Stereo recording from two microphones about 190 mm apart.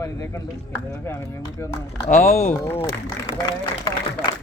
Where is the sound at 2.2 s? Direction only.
50° left (ahead or behind).